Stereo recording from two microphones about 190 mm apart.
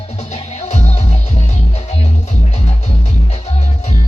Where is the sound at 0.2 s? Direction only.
35° left (ahead or behind).